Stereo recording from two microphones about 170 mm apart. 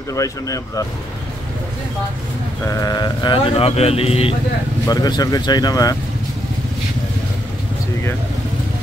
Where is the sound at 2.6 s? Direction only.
20° left (ahead or behind).